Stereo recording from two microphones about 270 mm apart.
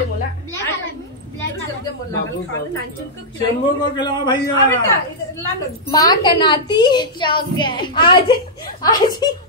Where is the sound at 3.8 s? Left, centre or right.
Centre.